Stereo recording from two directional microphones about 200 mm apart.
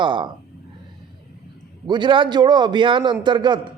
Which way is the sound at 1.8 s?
20° right (ahead or behind).